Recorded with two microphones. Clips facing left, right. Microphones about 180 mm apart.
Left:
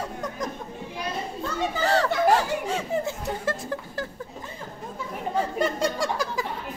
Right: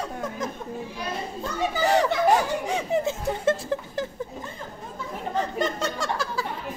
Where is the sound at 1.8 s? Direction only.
15° right (ahead or behind).